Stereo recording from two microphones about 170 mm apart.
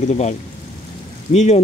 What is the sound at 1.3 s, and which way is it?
Speech, 45° left (ahead or behind).